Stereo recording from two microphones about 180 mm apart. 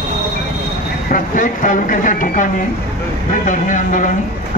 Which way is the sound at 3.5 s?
45° left (ahead or behind).